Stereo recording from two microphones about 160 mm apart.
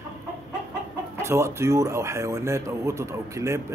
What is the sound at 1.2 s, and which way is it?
Speech, 15° right (ahead or behind).